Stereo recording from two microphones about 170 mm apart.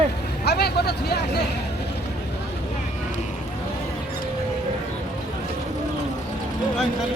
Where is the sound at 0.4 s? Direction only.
70° left (ahead or behind).